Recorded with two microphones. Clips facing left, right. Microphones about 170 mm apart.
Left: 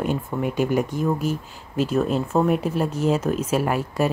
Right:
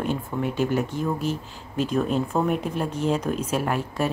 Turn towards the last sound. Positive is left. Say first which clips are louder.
# left 3 dB
turn(degrees=10)  # may be behind; listen again after turning